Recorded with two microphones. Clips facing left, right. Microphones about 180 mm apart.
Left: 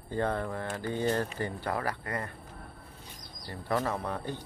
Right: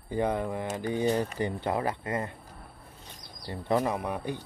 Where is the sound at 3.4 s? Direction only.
20° right (ahead or behind).